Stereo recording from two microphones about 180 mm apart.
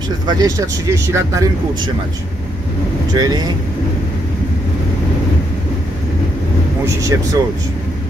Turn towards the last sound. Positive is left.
turn(degrees=-15)  # may be behind; listen again after turning